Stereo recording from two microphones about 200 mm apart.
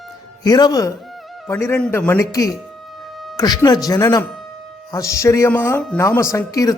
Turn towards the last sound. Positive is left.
turn(degrees=20)  # may be behind; listen again after turning